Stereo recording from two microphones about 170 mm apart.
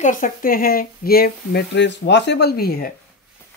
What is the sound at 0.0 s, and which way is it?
Speech, 50° left (ahead or behind).